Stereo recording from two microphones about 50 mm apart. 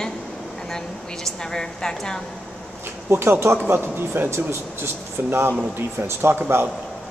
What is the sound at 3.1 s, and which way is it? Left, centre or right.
Speech, right.